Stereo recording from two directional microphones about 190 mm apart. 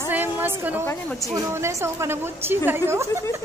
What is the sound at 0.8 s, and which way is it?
Speech, 15° left (ahead or behind).